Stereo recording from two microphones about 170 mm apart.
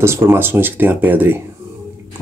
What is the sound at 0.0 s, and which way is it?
Speech, 15° right (ahead or behind).